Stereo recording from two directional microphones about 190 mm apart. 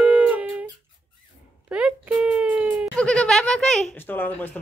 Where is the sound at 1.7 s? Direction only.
5° right (ahead or behind).